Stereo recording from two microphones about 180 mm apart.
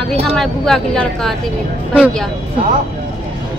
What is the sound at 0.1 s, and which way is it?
Speech, centre (ahead or behind).